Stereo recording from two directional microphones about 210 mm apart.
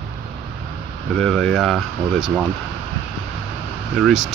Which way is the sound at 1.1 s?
5° left (ahead or behind).